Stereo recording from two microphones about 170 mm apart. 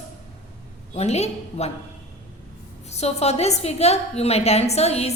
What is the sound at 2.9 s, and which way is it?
A woman's voice, 40° left (ahead or behind).